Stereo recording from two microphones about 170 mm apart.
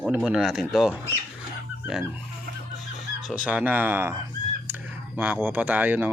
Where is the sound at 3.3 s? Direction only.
5° right (ahead or behind).